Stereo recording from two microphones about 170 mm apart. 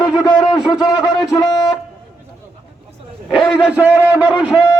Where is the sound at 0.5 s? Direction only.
Centre (ahead or behind).